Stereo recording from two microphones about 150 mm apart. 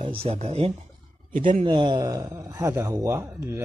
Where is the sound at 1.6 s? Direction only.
30° right (ahead or behind).